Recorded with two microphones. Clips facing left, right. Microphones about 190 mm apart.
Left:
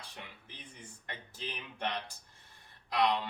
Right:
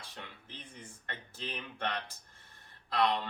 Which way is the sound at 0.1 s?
15° left (ahead or behind).